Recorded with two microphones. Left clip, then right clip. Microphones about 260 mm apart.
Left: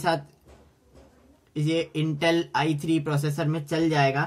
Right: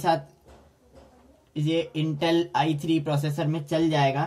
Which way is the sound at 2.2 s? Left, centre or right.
Left.